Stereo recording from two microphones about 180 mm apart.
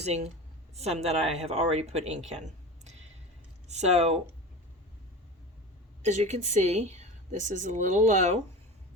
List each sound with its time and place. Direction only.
0.0 s a woman's voice: 40° right (ahead or behind)
3.7 s a woman's voice: 40° right (ahead or behind)
6.0 s a woman's voice: 40° right (ahead or behind)